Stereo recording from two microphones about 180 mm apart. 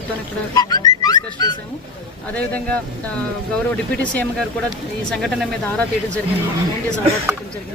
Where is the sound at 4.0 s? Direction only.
10° left (ahead or behind).